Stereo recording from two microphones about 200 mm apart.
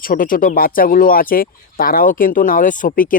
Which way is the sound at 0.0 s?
45° left (ahead or behind).